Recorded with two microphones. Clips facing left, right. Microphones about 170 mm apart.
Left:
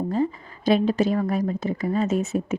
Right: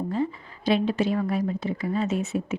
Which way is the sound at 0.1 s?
40° left (ahead or behind).